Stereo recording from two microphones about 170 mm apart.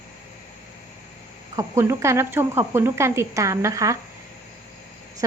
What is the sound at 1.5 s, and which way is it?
A woman's voice, 15° right (ahead or behind).